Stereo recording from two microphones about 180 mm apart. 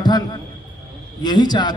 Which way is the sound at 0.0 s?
25° left (ahead or behind).